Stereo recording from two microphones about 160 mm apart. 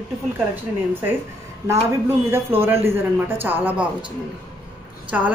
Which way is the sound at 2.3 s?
15° right (ahead or behind).